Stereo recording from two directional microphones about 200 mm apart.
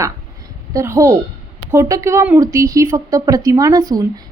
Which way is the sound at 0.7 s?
15° right (ahead or behind).